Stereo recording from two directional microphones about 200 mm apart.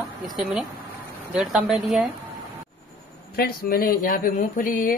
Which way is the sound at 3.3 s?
50° left (ahead or behind).